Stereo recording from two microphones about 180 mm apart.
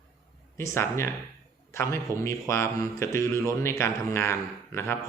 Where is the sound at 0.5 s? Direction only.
15° left (ahead or behind).